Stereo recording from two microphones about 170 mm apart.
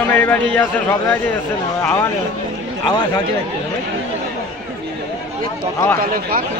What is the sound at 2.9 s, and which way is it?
Speech, 25° left (ahead or behind).